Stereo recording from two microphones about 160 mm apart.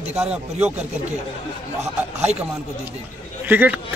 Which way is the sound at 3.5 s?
10° right (ahead or behind).